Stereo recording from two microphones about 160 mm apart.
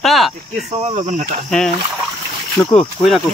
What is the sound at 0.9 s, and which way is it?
Speech, 50° right (ahead or behind).